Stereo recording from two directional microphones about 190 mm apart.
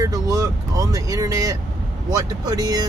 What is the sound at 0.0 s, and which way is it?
Speech, 20° right (ahead or behind).